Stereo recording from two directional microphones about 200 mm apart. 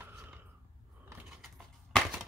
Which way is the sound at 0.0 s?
10° right (ahead or behind).